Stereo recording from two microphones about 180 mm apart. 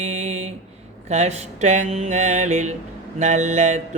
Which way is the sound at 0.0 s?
40° right (ahead or behind).